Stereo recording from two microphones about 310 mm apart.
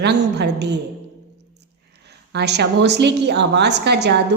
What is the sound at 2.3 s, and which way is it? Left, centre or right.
A woman's voice, right.